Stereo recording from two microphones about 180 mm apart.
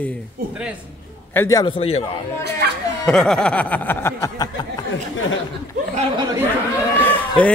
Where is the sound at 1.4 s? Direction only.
15° left (ahead or behind).